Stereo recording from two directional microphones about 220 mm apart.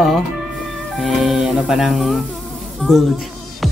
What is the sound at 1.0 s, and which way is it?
Speech, centre (ahead or behind).